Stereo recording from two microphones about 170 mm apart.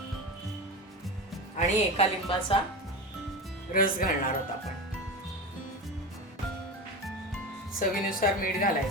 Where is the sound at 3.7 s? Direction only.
55° left (ahead or behind).